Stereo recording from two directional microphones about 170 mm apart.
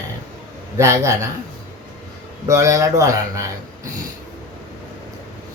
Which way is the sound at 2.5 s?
20° right (ahead or behind).